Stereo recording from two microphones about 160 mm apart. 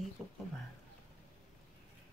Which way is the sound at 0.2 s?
Centre (ahead or behind).